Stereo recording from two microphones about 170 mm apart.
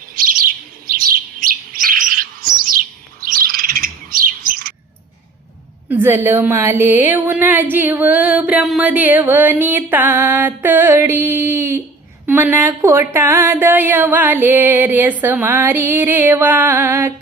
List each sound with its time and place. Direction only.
0.1 s bird: 55° right (ahead or behind)
5.9 s a woman's voice: 10° right (ahead or behind)